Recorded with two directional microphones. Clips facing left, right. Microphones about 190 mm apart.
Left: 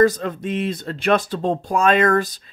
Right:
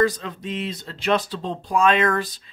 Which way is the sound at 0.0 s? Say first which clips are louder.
Left 5 dB; 50° left (ahead or behind).